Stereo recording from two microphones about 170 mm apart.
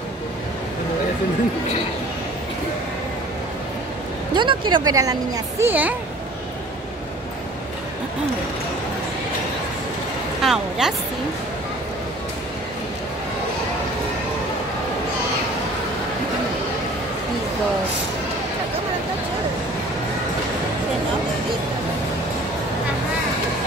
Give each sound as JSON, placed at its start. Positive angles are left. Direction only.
{"t": 4.3, "sound": "speech", "side_deg": -25}
{"t": 10.4, "sound": "speech", "side_deg": 0}